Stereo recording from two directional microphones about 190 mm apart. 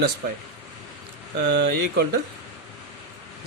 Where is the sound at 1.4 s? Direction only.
60° right (ahead or behind).